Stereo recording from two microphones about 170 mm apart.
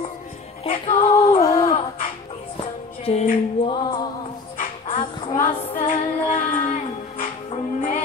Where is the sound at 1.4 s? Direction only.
20° left (ahead or behind).